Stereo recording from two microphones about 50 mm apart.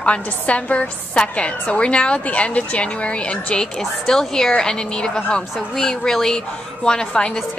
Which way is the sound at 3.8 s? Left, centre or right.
Centre.